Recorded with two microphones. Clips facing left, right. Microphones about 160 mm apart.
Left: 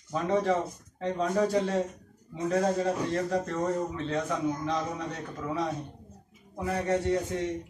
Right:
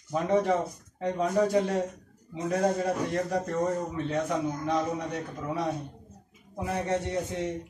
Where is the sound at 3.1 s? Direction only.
15° right (ahead or behind).